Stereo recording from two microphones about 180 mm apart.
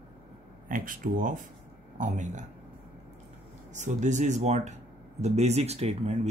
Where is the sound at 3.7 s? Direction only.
40° right (ahead or behind).